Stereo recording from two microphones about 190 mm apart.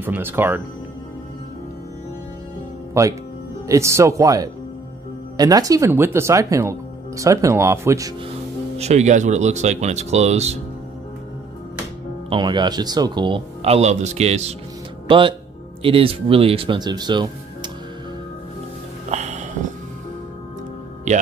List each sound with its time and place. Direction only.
0.0 s speech: 10° right (ahead or behind)
2.9 s speech: 15° right (ahead or behind)
8.7 s speech: 35° right (ahead or behind)
12.3 s speech: 25° right (ahead or behind)
19.0 s music: 35° right (ahead or behind)